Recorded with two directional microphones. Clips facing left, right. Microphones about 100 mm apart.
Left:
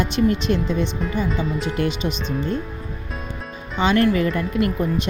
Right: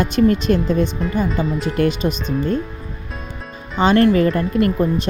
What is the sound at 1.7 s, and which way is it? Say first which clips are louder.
Speech: right 5 dB; 45° right (ahead or behind).